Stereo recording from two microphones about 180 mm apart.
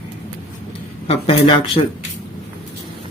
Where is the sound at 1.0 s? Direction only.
35° left (ahead or behind).